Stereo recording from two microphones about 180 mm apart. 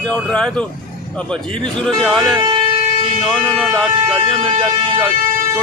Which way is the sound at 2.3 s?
25° right (ahead or behind).